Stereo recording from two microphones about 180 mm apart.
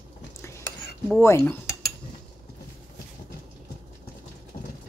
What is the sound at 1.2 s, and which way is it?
Speech, 15° left (ahead or behind).